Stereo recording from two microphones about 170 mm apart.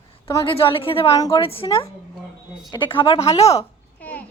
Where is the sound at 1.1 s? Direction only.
20° left (ahead or behind).